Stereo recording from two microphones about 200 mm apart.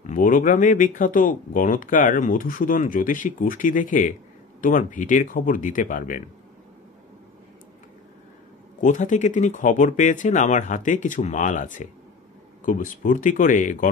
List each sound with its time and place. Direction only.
0.0 s speech: 40° left (ahead or behind)
8.8 s speech: 40° left (ahead or behind)